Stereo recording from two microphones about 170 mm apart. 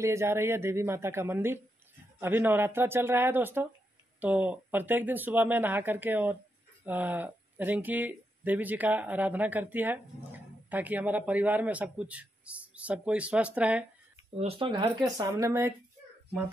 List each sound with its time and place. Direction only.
0.0 s speech: 15° right (ahead or behind)
14.3 s speech: 35° right (ahead or behind); by 15.7 s 20° right (ahead or behind)